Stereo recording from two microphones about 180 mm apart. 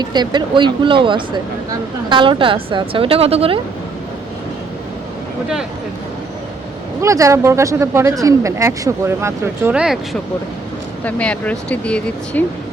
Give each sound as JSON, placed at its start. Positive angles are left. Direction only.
{"t": 0.0, "sound": "a woman's voice", "side_deg": -25}
{"t": 7.0, "sound": "speech", "side_deg": -15}